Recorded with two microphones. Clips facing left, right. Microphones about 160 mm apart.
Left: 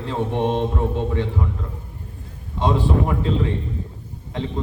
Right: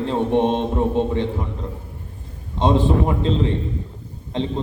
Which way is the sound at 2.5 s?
25° right (ahead or behind).